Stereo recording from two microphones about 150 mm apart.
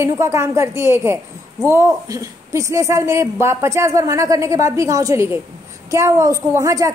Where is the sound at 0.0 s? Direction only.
20° right (ahead or behind).